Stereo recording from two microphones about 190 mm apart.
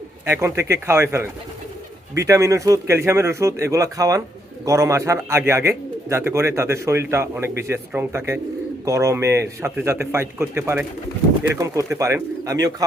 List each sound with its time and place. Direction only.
0.3 s a man's voice: 15° right (ahead or behind)